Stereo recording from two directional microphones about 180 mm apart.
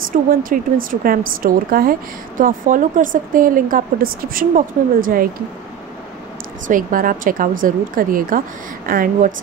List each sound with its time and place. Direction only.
0.3 s a woman's voice: 50° right (ahead or behind)
6.7 s a woman's voice: 50° right (ahead or behind)